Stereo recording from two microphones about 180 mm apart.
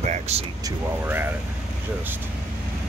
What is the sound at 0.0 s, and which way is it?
Vehicle, 40° right (ahead or behind).